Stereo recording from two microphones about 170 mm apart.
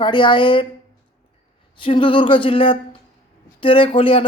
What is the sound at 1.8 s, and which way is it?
Speech, 30° left (ahead or behind).